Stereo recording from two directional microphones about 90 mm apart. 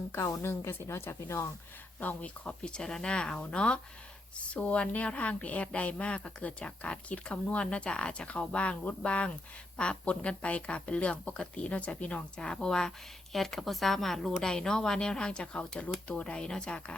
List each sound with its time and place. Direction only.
0.1 s speech: 30° left (ahead or behind)
2.0 s a woman's voice: 20° left (ahead or behind)